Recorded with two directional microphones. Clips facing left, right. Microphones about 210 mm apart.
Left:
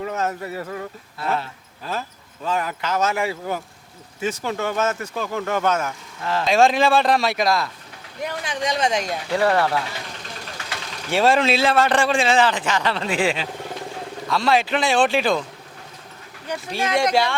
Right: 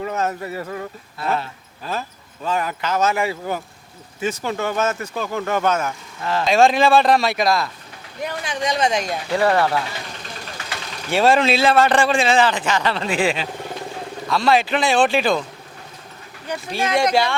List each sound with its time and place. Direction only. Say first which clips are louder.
0.0 s a sound: right 2 dB; 20° right (ahead or behind)
1.2 s speech: right 1 dB; 15° right (ahead or behind)
16.5 s speech: right 1 dB; 10° right (ahead or behind)